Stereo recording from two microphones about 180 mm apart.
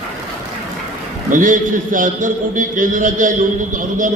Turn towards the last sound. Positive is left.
turn(degrees=-45)  # may be behind; listen again after turning